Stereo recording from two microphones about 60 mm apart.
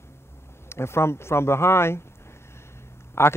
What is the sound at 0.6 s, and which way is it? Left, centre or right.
A man's voice, left.